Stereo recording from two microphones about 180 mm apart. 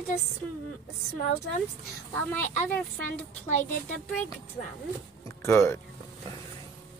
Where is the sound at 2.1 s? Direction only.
10° left (ahead or behind).